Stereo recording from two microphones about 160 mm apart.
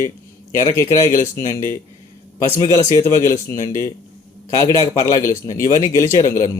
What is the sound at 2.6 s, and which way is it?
A man's voice, 20° left (ahead or behind).